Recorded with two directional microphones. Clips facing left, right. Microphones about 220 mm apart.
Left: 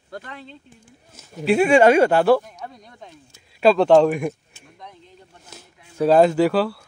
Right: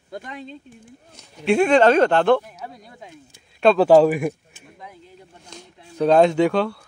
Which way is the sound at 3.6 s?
Centre (ahead or behind).